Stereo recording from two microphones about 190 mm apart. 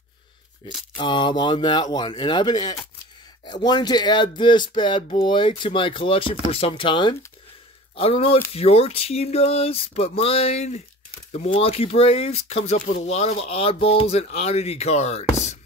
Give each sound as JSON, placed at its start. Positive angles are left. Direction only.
{"t": 0.9, "sound": "speech", "side_deg": 25}